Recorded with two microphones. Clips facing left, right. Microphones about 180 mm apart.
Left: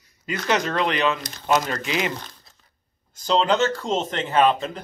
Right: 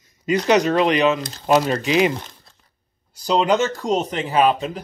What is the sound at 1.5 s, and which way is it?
Speech, 25° right (ahead or behind).